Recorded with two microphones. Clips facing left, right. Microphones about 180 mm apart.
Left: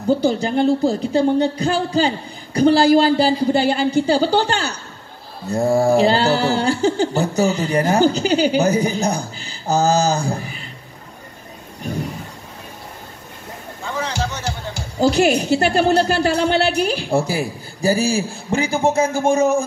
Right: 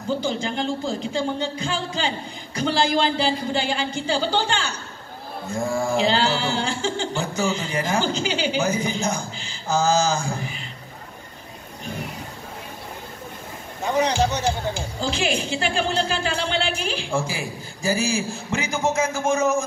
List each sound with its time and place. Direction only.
0.4 s mantra: 40° left (ahead or behind)
13.8 s a sound: 20° right (ahead or behind)
15.0 s mantra: 40° left (ahead or behind)